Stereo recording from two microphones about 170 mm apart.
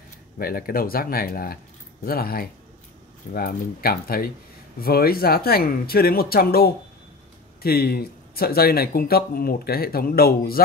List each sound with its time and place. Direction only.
0.4 s speech: 60° left (ahead or behind)